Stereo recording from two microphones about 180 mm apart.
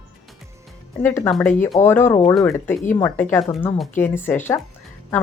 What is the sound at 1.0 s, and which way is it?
A woman's voice, 10° left (ahead or behind).